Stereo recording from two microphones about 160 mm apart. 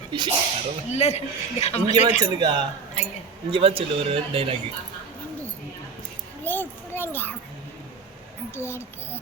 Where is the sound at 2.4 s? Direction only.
25° right (ahead or behind).